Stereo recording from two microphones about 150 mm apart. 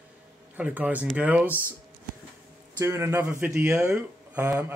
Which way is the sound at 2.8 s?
20° right (ahead or behind).